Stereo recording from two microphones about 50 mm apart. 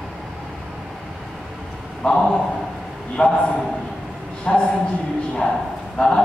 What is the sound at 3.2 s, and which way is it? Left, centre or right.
A man's voice, centre.